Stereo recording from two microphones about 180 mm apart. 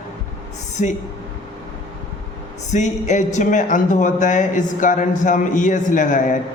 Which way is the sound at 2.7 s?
40° left (ahead or behind).